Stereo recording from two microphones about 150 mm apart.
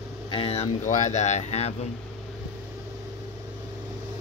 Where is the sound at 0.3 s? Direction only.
40° left (ahead or behind).